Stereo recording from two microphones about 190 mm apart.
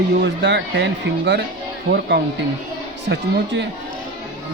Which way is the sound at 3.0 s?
70° right (ahead or behind).